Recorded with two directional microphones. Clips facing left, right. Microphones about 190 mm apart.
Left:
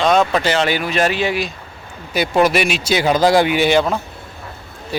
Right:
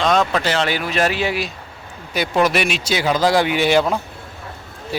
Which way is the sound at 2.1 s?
5° left (ahead or behind).